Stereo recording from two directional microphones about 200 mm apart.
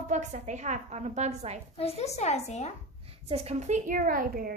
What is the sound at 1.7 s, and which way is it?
A woman's voice, 30° left (ahead or behind).